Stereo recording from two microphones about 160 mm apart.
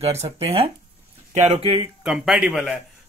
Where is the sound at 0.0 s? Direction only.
40° right (ahead or behind).